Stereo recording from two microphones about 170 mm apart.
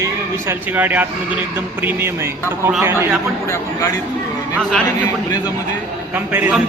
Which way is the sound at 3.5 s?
20° left (ahead or behind).